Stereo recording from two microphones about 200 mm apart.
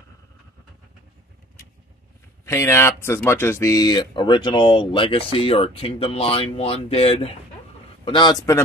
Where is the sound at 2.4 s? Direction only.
15° left (ahead or behind).